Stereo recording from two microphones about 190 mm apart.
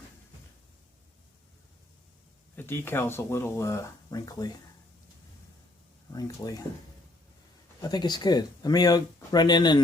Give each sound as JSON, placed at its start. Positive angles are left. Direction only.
{"t": 2.6, "sound": "speech", "side_deg": 10}
{"t": 6.1, "sound": "speech", "side_deg": 20}
{"t": 7.8, "sound": "speech", "side_deg": 20}